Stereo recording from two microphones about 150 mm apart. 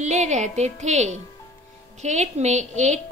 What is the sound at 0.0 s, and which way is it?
A woman's voice, 50° right (ahead or behind).